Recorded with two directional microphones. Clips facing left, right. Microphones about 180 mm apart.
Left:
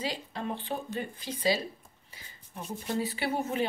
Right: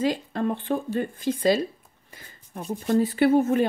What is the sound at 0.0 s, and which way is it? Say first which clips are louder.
Speech: right 10 dB; 50° right (ahead or behind).